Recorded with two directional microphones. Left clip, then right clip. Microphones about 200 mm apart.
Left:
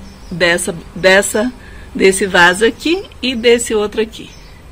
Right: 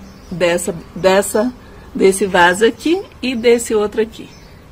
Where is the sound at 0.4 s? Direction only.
Centre (ahead or behind).